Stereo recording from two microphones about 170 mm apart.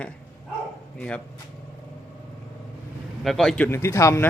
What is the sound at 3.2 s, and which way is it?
A man's voice, centre (ahead or behind).